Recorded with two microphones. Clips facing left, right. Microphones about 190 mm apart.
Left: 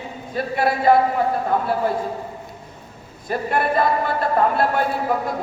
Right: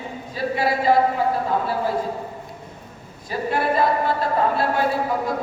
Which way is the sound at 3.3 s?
55° left (ahead or behind).